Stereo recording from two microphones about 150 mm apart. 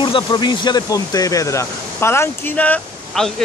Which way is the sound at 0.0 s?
30° left (ahead or behind).